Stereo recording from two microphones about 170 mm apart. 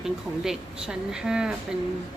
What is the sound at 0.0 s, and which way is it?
Speech, centre (ahead or behind).